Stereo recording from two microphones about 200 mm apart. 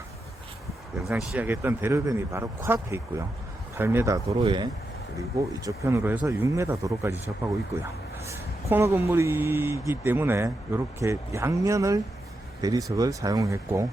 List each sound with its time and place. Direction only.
1.0 s speech: 5° right (ahead or behind)
8.3 s speech: 15° right (ahead or behind)